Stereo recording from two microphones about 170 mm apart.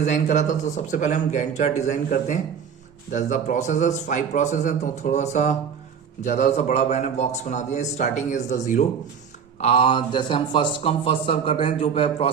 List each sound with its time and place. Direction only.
0.0 s a man's voice: 45° left (ahead or behind)
9.6 s speech: 35° left (ahead or behind)